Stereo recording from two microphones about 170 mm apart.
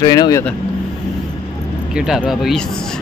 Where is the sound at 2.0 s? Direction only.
5° right (ahead or behind).